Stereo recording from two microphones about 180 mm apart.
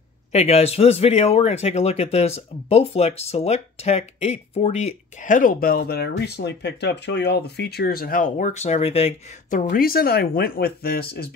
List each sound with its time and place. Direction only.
0.3 s speech: 35° left (ahead or behind)
9.5 s speech: 55° left (ahead or behind)